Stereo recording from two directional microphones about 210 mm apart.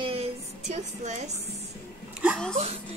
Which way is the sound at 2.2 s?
Centre (ahead or behind).